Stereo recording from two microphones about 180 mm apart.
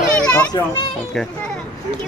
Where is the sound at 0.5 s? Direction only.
20° left (ahead or behind).